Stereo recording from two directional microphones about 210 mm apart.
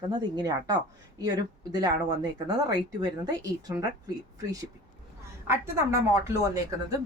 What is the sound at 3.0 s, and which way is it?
Speech, 15° right (ahead or behind).